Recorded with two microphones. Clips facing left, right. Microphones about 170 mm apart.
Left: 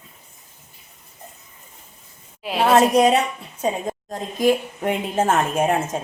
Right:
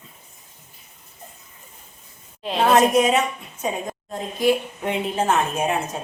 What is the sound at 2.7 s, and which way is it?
Speech, 35° left (ahead or behind).